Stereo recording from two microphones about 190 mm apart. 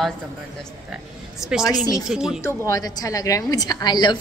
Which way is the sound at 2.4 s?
20° left (ahead or behind).